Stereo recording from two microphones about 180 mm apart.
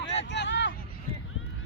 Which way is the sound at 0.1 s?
80° left.